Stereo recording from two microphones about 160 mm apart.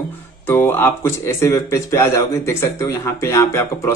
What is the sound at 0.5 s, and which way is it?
A man's voice, 15° left (ahead or behind).